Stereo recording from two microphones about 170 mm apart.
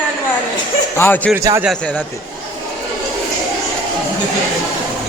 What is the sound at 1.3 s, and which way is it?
Speech, 15° right (ahead or behind).